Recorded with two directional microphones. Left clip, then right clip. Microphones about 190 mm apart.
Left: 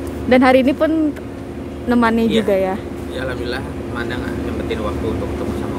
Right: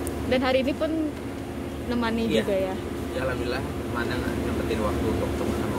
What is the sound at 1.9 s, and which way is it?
Speech, 35° left (ahead or behind).